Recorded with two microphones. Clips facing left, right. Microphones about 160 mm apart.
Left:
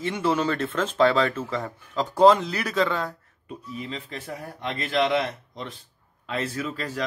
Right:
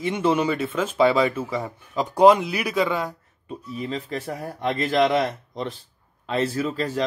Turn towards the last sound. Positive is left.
turn(degrees=-30)  # may be behind; listen again after turning